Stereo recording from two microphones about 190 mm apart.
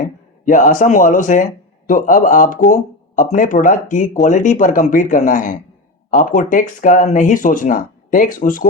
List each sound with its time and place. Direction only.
0.0 s speech: 45° left (ahead or behind)